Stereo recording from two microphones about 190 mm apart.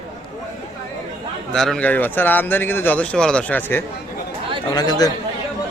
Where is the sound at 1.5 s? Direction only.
5° left (ahead or behind).